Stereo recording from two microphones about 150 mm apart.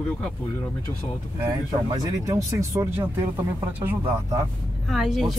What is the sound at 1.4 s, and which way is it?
Speech, 20° right (ahead or behind).